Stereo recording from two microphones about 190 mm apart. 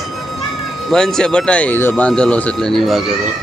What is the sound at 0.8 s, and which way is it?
Speech, 5° left (ahead or behind).